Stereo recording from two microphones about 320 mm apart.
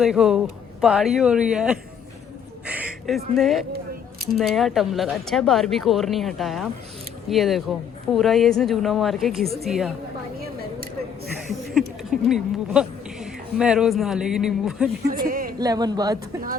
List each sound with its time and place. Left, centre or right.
0.0 s speech: centre
2.6 s a sound: centre
3.3 s speech: centre
11.7 s speech: centre
15.3 s a sound: right
15.5 s speech: centre